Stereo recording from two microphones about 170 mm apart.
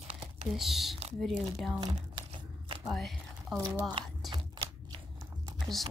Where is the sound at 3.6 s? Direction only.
15° right (ahead or behind).